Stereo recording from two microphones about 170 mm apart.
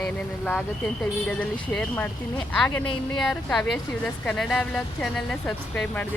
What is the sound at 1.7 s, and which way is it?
A woman's voice, 5° left (ahead or behind).